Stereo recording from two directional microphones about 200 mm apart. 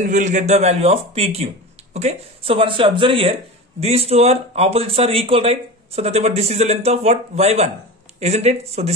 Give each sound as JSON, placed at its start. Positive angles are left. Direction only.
{"t": 0.0, "sound": "speech", "side_deg": -40}